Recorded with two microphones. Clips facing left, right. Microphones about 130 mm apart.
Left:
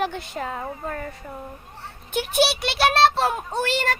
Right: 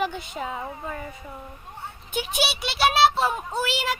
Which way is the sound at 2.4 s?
Centre (ahead or behind).